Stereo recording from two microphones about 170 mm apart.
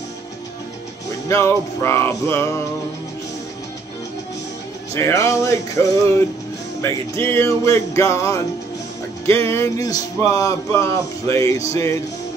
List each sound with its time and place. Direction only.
1.3 s speech: 15° left (ahead or behind)
4.9 s speech: 15° left (ahead or behind)
11.7 s music: 20° left (ahead or behind)